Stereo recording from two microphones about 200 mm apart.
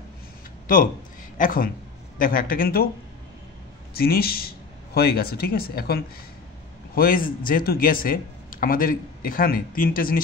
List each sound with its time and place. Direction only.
1.4 s speech: 45° left (ahead or behind)
4.0 s speech: 50° left (ahead or behind)
7.0 s speech: 45° left (ahead or behind)